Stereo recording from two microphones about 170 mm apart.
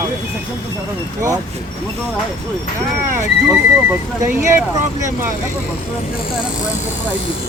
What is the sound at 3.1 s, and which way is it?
Speech, 15° right (ahead or behind).